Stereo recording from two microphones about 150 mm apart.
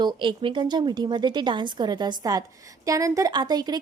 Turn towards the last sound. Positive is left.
turn(degrees=-25)  # may be behind; listen again after turning